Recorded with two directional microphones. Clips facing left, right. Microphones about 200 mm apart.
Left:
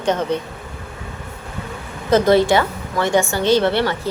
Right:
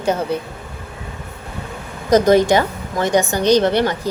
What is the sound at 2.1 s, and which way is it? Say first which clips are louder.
A woman's voice: right 1 dB; 15° right (ahead or behind).